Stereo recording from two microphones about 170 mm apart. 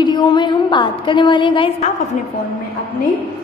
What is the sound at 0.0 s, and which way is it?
A woman's voice, 25° left (ahead or behind).